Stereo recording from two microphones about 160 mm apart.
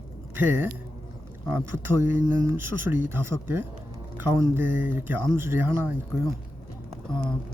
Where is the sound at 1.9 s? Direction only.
15° right (ahead or behind).